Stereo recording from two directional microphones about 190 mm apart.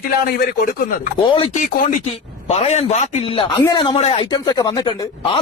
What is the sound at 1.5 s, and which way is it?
Speech, 45° left (ahead or behind).